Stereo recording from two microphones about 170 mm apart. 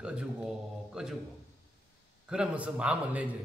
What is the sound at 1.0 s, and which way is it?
Speech, 5° right (ahead or behind).